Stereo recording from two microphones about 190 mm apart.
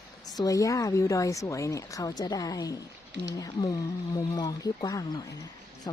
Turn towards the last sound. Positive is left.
turn(degrees=25)  # may be behind; listen again after turning